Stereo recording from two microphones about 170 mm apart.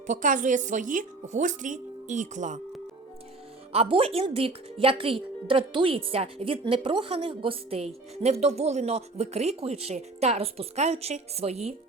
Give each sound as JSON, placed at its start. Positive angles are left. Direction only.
{"t": 0.1, "sound": "speech", "side_deg": -50}
{"t": 3.7, "sound": "a woman's voice", "side_deg": -35}